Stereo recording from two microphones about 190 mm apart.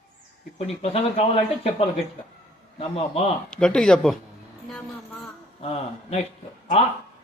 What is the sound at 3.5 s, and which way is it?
Speech, 5° left (ahead or behind).